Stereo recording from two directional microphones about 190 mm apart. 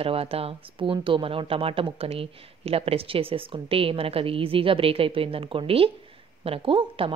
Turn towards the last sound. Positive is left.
turn(degrees=-30)  # may be behind; listen again after turning